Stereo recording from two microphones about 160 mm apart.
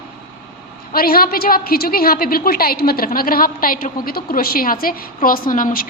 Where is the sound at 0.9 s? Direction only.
70° left (ahead or behind).